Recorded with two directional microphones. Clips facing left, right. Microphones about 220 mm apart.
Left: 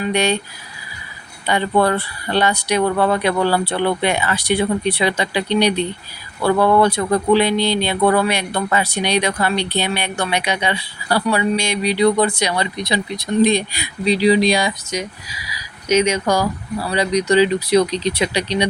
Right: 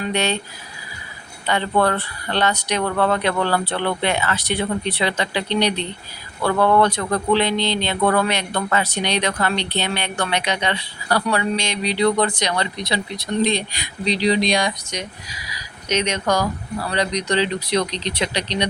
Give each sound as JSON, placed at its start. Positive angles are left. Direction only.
{"t": 0.0, "sound": "speech", "side_deg": 15}
{"t": 1.5, "sound": "speech", "side_deg": 15}